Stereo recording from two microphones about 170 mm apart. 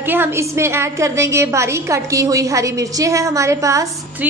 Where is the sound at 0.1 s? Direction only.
15° right (ahead or behind).